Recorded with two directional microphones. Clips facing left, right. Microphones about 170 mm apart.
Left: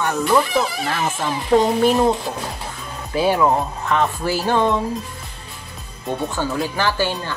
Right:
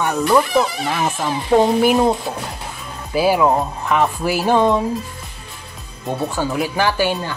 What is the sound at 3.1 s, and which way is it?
Speech, 10° right (ahead or behind).